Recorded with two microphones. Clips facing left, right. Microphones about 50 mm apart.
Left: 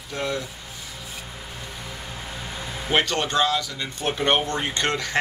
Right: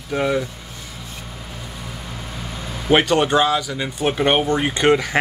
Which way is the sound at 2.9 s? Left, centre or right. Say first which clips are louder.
Right 7 dB; centre.